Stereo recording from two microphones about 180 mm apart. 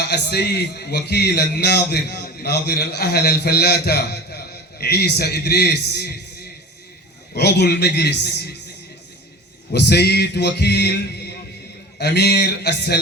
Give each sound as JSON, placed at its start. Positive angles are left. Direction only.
{"t": 0.1, "sound": "speech", "side_deg": 65}
{"t": 7.3, "sound": "speech", "side_deg": 65}
{"t": 9.7, "sound": "speech", "side_deg": 65}